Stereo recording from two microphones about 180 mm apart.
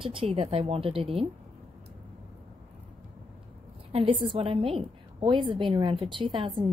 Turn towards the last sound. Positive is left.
turn(degrees=-30)  # may be behind; listen again after turning